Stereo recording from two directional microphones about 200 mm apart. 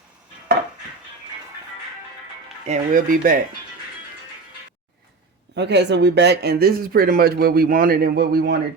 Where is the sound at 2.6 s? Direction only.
40° right (ahead or behind).